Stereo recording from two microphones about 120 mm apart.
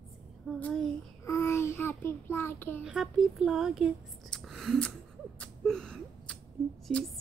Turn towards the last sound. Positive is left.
turn(degrees=0)  # may be behind; listen again after turning